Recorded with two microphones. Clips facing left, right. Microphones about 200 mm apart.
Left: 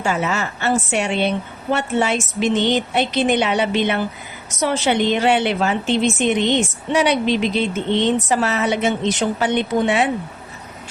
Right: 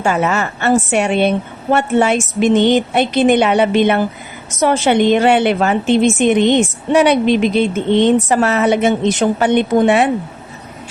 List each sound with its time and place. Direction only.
0.0 s a woman's voice: 55° right (ahead or behind)